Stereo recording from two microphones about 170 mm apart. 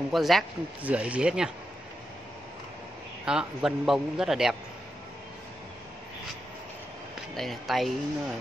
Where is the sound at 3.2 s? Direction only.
5° right (ahead or behind).